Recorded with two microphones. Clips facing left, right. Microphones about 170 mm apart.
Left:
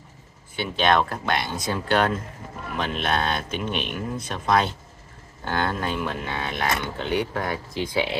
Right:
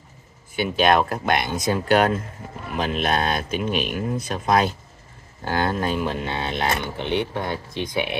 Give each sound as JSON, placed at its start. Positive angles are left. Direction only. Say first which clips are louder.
{"t": 0.6, "sound": "speech", "louder": "right 3 dB", "side_deg": -10}
{"t": 2.8, "sound": "speech", "louder": "right 3 dB", "side_deg": -35}
{"t": 3.2, "sound": "speech", "louder": "right 3 dB", "side_deg": -10}
{"t": 5.6, "sound": "speech", "louder": "right 3 dB", "side_deg": -35}